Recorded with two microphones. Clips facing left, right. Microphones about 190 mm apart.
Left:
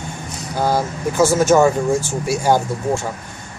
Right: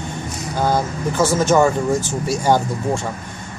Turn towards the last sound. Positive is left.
turn(degrees=10)  # may be behind; listen again after turning